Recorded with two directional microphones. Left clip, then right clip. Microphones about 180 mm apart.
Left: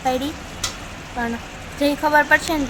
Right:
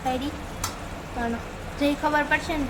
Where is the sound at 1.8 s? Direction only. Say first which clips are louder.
Left 7 dB; 25° left (ahead or behind).